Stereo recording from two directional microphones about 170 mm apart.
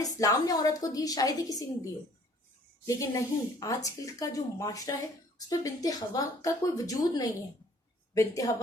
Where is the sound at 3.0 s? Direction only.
20° left (ahead or behind).